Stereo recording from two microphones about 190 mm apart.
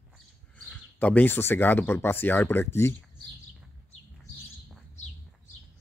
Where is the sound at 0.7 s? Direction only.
5° left (ahead or behind).